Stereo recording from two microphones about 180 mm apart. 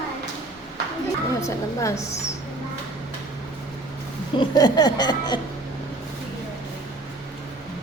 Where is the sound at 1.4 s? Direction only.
15° left (ahead or behind).